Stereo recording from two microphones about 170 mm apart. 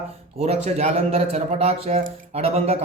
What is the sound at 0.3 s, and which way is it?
Speech, 35° right (ahead or behind).